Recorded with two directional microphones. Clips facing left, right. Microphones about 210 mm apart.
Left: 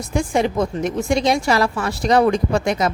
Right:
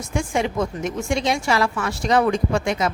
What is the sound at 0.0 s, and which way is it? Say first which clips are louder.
A woman's voice: left 4 dB; 35° left (ahead or behind).